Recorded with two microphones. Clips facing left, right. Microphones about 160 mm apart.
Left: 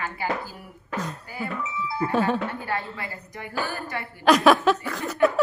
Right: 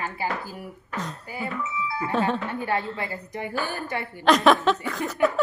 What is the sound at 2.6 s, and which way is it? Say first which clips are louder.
A woman's voice: right 3 dB; 20° right (ahead or behind).